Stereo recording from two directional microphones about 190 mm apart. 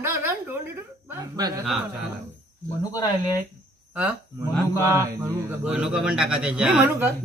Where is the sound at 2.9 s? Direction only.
20° left (ahead or behind).